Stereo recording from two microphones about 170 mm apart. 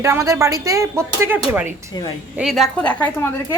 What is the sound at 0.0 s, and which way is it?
A woman's voice, 20° right (ahead or behind).